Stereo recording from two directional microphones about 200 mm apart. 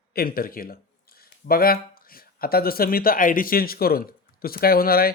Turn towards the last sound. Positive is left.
turn(degrees=50)  # may be behind; listen again after turning